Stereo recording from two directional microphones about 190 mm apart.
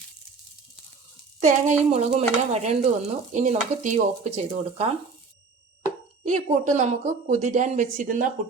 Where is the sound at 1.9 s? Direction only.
35° right (ahead or behind).